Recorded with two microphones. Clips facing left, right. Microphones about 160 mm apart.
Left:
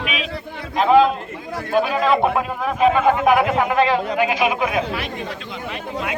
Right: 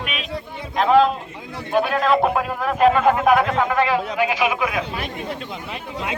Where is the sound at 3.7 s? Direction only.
25° left (ahead or behind).